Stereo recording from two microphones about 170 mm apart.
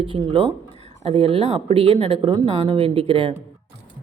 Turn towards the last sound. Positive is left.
turn(degrees=-35)  # may be behind; listen again after turning